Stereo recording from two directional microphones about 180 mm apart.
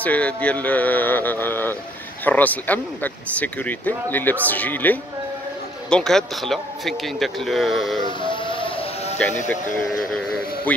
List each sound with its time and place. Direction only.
0.0 s speech: 10° left (ahead or behind)
8.2 s music: 30° left (ahead or behind)
9.5 s speech: 5° left (ahead or behind)